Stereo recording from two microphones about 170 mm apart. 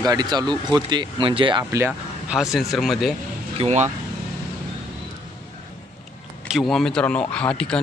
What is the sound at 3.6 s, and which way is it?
Speech, 40° right (ahead or behind).